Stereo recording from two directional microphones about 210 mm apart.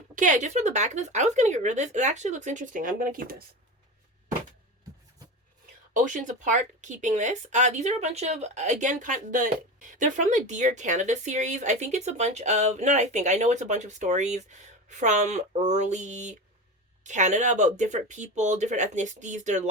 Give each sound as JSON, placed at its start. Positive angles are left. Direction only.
{"t": 0.2, "sound": "speech", "side_deg": -35}
{"t": 5.9, "sound": "speech", "side_deg": -35}